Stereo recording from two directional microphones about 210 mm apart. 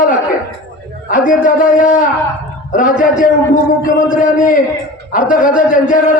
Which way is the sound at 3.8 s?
40° left (ahead or behind).